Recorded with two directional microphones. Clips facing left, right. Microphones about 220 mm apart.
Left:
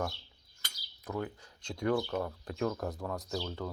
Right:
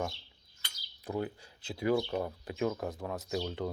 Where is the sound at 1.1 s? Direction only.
25° right (ahead or behind).